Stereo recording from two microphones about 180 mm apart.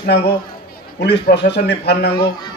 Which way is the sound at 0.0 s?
70° left (ahead or behind).